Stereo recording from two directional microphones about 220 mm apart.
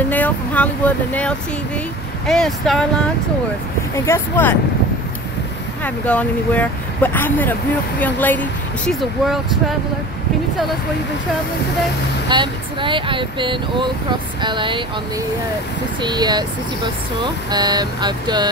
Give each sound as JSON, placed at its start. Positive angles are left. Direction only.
{"t": 0.1, "sound": "speech", "side_deg": 5}
{"t": 3.9, "sound": "speech", "side_deg": 10}
{"t": 5.9, "sound": "speech", "side_deg": 5}
{"t": 12.3, "sound": "speech", "side_deg": -20}
{"t": 16.0, "sound": "speech", "side_deg": -20}